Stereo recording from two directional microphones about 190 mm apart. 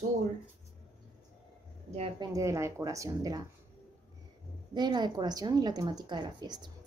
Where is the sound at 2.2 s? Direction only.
15° right (ahead or behind).